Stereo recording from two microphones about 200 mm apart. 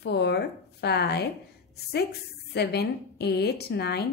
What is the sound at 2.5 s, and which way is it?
A woman's voice, 55° left (ahead or behind).